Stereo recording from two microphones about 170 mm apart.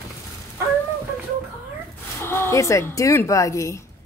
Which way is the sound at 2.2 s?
15° left (ahead or behind).